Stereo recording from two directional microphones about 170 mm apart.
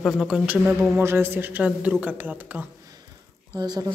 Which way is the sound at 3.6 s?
25° right (ahead or behind).